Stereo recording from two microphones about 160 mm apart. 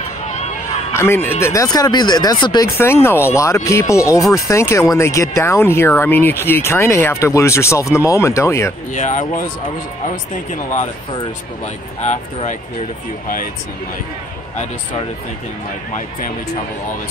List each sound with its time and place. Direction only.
0.9 s speech: 15° left (ahead or behind)
8.9 s speech: 50° left (ahead or behind)